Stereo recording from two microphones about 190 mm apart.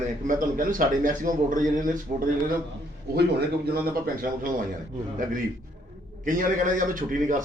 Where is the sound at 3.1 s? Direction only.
55° right (ahead or behind).